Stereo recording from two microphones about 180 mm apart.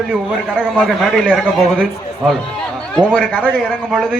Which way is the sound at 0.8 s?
5° left (ahead or behind).